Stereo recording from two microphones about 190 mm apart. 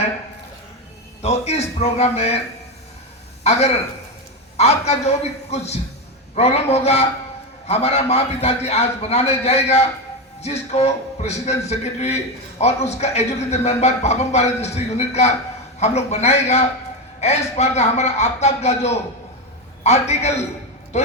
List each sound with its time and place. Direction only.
1.2 s a man's voice: 35° left (ahead or behind)
3.4 s a man's voice: 35° left (ahead or behind)